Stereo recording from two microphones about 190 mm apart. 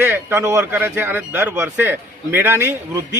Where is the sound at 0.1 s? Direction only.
15° right (ahead or behind).